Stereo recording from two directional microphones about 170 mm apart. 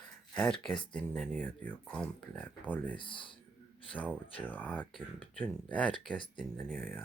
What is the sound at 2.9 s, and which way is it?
Speech, 30° left (ahead or behind).